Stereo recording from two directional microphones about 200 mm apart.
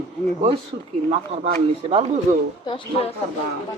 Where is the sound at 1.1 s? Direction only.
30° right (ahead or behind).